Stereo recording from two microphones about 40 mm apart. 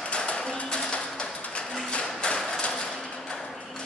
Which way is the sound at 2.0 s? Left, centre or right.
Left.